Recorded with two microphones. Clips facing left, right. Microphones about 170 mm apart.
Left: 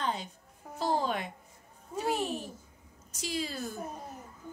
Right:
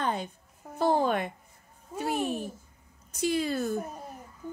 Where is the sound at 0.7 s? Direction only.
55° right (ahead or behind).